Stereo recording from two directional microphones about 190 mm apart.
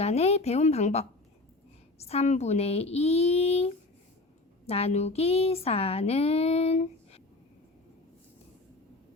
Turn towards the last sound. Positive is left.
turn(degrees=35)  # may be behind; listen again after turning